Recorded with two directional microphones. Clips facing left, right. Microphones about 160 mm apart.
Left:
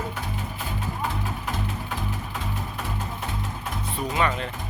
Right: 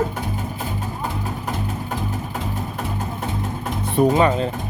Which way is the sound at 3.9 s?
50° right (ahead or behind).